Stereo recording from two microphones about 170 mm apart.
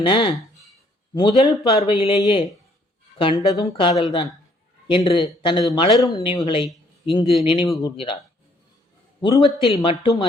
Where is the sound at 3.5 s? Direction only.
20° left (ahead or behind).